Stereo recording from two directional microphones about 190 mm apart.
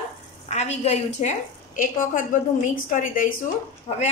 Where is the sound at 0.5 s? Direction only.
35° left (ahead or behind).